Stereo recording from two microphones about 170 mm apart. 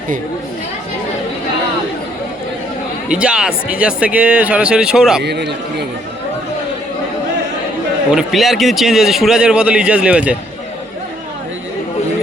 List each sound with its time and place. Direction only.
3.1 s speech: 5° right (ahead or behind)
5.2 s speech: 80° right
8.1 s a man's voice: centre (ahead or behind)